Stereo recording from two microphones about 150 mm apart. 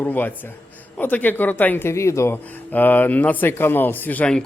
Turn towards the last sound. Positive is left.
turn(degrees=5)  # may be behind; listen again after turning